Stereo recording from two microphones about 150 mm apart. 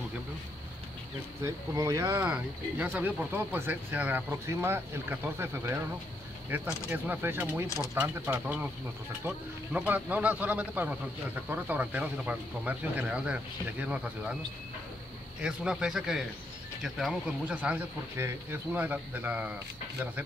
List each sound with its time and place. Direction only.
1.4 s speech: 20° right (ahead or behind)
7.6 s speech: 20° left (ahead or behind)
7.9 s speech: 15° right (ahead or behind)
15.4 s a man's voice: 5° right (ahead or behind)